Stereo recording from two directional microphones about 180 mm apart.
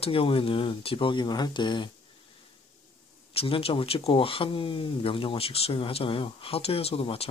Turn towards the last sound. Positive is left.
turn(degrees=30)  # may be behind; listen again after turning